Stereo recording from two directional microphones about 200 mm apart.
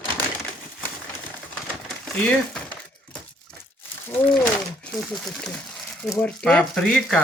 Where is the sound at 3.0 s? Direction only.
5° left (ahead or behind).